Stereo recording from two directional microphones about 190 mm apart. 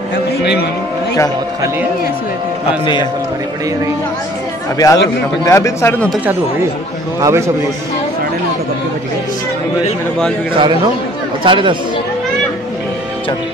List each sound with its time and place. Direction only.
2.8 s a man's voice: 25° left (ahead or behind)
4.7 s a man's voice: 20° left (ahead or behind)
7.2 s a man's voice: 15° right (ahead or behind)
10.5 s a man's voice: 25° right (ahead or behind)